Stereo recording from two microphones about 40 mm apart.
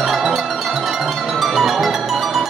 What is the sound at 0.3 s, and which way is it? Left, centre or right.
Music, centre.